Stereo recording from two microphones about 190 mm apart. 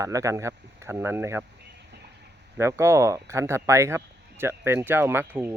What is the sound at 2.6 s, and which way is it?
Speech, 15° right (ahead or behind).